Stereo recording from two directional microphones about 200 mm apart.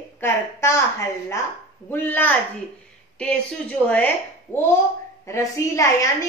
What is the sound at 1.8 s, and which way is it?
A woman's voice, 10° left (ahead or behind).